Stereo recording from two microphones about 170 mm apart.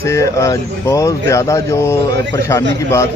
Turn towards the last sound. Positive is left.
turn(degrees=15)  # may be behind; listen again after turning